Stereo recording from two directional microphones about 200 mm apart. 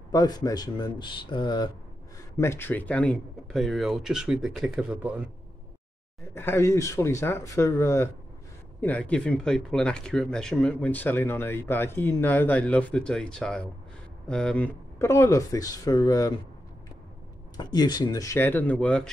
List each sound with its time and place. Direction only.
0.1 s speech: 20° left (ahead or behind); by 5.3 s 5° right (ahead or behind)
6.3 s speech: 10° left (ahead or behind)
17.6 s speech: 20° left (ahead or behind); by 19.0 s 5° left (ahead or behind)